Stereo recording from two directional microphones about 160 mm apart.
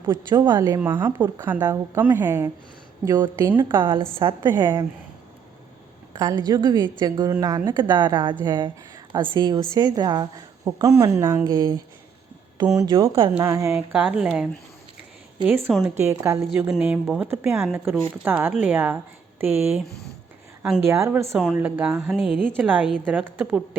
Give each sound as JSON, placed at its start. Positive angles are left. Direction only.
{"t": 0.0, "sound": "a woman's voice", "side_deg": -15}
{"t": 0.3, "sound": "a woman's voice", "side_deg": -25}
{"t": 0.8, "sound": "a woman's voice", "side_deg": -15}
{"t": 3.8, "sound": "a woman's voice", "side_deg": -30}
{"t": 4.4, "sound": "a woman's voice", "side_deg": -15}
{"t": 6.1, "sound": "a woman's voice", "side_deg": -25}
{"t": 13.4, "sound": "a woman's voice", "side_deg": -20}
{"t": 13.7, "sound": "a woman's voice", "side_deg": -5}
{"t": 17.7, "sound": "a woman's voice", "side_deg": -5}
{"t": 20.8, "sound": "a woman's voice", "side_deg": -15}
{"t": 22.1, "sound": "speech", "side_deg": 0}
{"t": 22.4, "sound": "a woman's voice", "side_deg": -10}